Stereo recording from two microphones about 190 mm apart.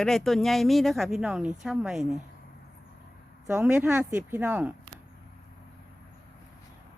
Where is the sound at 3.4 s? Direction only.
15° right (ahead or behind).